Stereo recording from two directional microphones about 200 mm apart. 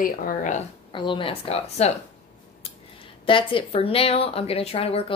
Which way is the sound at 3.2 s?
25° left (ahead or behind).